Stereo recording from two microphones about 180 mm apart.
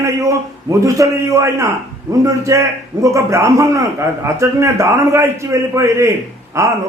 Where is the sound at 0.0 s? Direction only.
15° right (ahead or behind).